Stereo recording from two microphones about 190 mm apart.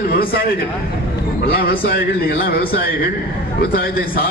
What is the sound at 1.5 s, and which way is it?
Speech, 55° left (ahead or behind).